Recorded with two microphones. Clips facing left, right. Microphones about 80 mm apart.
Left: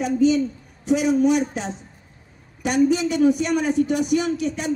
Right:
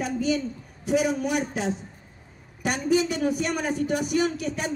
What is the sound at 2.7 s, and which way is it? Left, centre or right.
A woman's voice, right.